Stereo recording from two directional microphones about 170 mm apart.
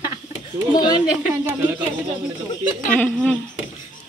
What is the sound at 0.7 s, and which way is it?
Speech, 25° left (ahead or behind).